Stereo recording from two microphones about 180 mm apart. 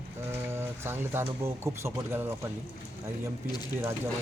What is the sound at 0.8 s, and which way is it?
Speech, 15° right (ahead or behind).